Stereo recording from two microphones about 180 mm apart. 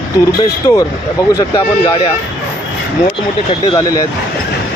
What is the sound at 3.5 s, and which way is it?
Speech, 25° left (ahead or behind).